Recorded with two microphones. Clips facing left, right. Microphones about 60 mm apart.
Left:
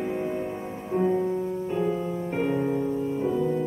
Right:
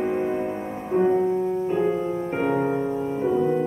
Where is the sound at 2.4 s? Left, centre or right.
Right.